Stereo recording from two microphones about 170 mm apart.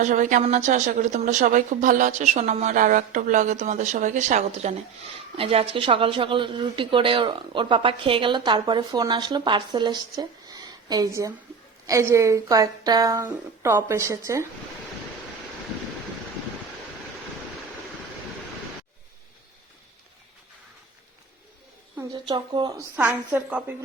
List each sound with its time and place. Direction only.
0.0 s a woman's voice: 50° right (ahead or behind); by 14.4 s 15° right (ahead or behind)
22.1 s speech: 30° right (ahead or behind)
23.0 s a woman's voice: 10° right (ahead or behind)